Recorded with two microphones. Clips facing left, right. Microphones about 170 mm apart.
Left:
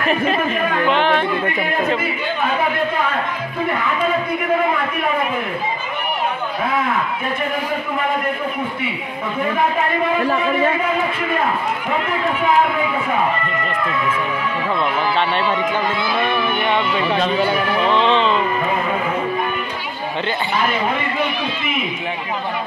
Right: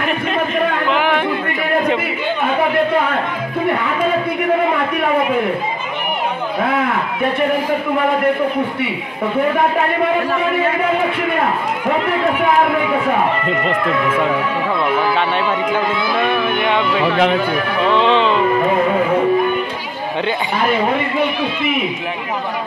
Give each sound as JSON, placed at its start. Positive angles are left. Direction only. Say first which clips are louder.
{"t": 0.9, "sound": "chatter", "louder": "even", "side_deg": -10}
{"t": 15.1, "sound": "a man's voice", "louder": "right 1 dB", "side_deg": -10}
{"t": 17.0, "sound": "speech", "louder": "right 4 dB", "side_deg": -70}
{"t": 17.9, "sound": "a man's voice", "louder": "right 3 dB", "side_deg": -15}